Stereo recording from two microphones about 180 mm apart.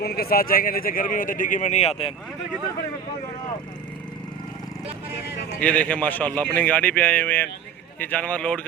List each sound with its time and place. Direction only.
0.0 s speech: 60° left (ahead or behind); by 2.1 s 35° left (ahead or behind)
5.5 s speech: 5° left (ahead or behind)